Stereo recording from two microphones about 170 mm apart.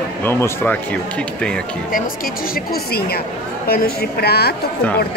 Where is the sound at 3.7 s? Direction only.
65° left (ahead or behind).